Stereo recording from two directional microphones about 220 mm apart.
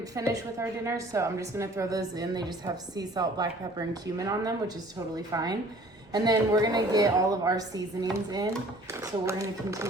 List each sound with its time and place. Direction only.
0.2 s a woman's voice: 15° right (ahead or behind)